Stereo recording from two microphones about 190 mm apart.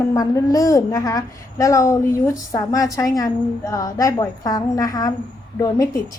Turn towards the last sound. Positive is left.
turn(degrees=15)  # may be behind; listen again after turning